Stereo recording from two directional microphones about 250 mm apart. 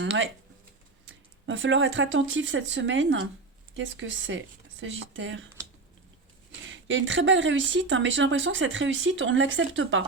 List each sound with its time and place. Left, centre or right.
0.0 s speech: right
6.7 s speech: right